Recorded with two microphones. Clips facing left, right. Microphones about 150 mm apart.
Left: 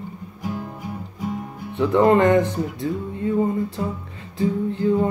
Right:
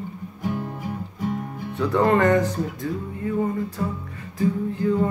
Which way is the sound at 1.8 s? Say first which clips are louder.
Left 3 dB; 20° left (ahead or behind).